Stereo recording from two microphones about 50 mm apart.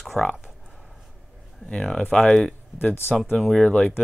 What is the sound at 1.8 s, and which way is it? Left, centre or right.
Speech, centre.